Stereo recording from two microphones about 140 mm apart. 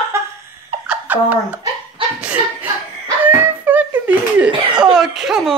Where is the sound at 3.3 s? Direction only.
15° right (ahead or behind).